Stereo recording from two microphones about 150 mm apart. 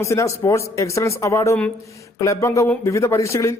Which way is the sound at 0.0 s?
20° left (ahead or behind).